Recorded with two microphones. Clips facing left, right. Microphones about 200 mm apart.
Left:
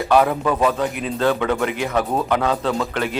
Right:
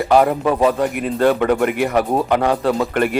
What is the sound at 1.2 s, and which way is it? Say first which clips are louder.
Speech: right 4 dB; 15° right (ahead or behind).